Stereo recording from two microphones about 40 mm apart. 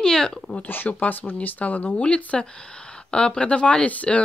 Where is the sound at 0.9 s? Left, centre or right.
Left.